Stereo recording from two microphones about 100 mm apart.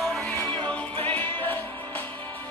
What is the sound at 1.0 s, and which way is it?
Music, 15° left (ahead or behind).